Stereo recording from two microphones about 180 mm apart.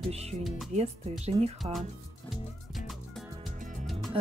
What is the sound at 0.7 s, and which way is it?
Speech, 40° right (ahead or behind).